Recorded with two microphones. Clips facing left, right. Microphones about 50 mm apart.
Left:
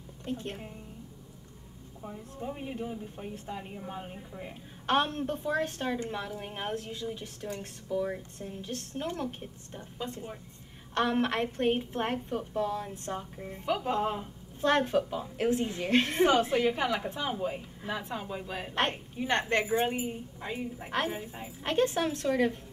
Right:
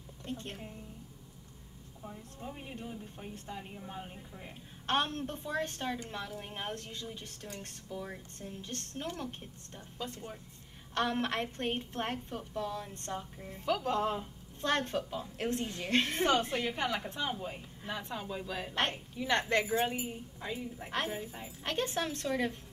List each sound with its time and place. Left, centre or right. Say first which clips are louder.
0.2 s a woman's voice: left 5 dB; centre
2.0 s a woman's voice: left 6 dB; centre
19.1 s a woman's voice: left 1 dB; left
20.0 s a woman's voice: left 4 dB; centre